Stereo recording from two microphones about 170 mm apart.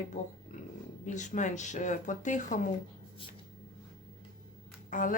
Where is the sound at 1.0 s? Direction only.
45° left (ahead or behind).